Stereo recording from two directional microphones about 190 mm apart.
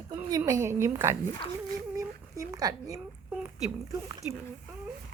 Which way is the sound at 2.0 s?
15° right (ahead or behind).